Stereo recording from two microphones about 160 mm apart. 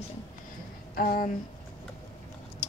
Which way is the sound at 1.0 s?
65° left (ahead or behind).